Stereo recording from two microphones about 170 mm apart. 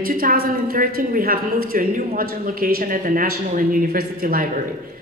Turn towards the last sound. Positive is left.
turn(degrees=-55)  # may be behind; listen again after turning